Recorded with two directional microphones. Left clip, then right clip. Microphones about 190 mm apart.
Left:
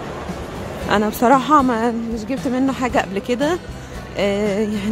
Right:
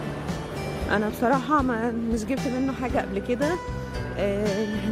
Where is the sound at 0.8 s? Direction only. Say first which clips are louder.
Left 8 dB; 10° left (ahead or behind).